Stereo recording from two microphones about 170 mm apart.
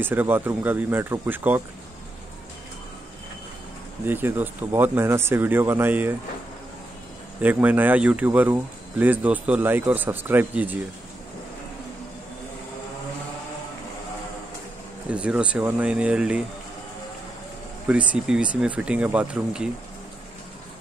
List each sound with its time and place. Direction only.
0.0 s speech: 10° right (ahead or behind)
4.0 s speech: 10° right (ahead or behind)
7.4 s speech: 10° right (ahead or behind)
15.0 s speech: 5° right (ahead or behind)
17.8 s speech: 10° right (ahead or behind)